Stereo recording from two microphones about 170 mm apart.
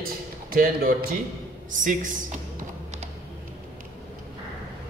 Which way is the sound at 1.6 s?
50° right (ahead or behind).